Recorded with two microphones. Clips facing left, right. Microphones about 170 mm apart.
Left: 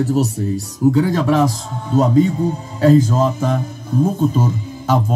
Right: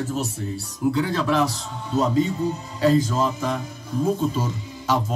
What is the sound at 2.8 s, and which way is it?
Speech, 45° left (ahead or behind).